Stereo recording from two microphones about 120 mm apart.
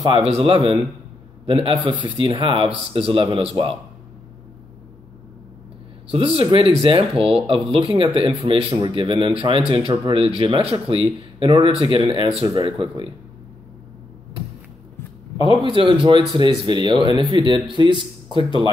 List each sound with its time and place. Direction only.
0.2 s speech: 55° right (ahead or behind)
6.1 s speech: 50° right (ahead or behind)
7.2 s speech: 5° right (ahead or behind)
7.4 s speech: 45° right (ahead or behind)
12.1 s speech: 45° right (ahead or behind)
15.7 s speech: 45° right (ahead or behind)